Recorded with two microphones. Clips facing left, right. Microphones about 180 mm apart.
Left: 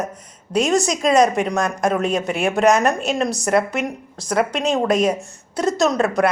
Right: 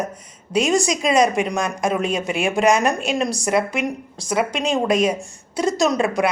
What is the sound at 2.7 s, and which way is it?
A woman's voice, 10° right (ahead or behind).